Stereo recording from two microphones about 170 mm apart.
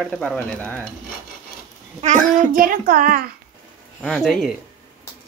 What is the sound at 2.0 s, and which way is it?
A child's voice, 45° right (ahead or behind).